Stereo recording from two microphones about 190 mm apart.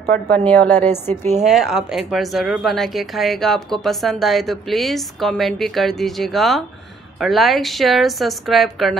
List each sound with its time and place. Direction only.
0.1 s a woman's voice: 10° left (ahead or behind)
1.4 s speech: 5° right (ahead or behind)